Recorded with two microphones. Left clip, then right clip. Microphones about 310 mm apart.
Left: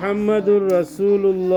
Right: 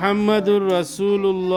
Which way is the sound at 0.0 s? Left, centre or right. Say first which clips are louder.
Even; right.